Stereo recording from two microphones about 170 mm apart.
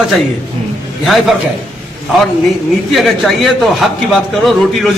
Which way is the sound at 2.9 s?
Centre (ahead or behind).